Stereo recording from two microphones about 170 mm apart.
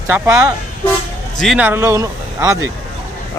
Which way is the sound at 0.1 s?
15° right (ahead or behind).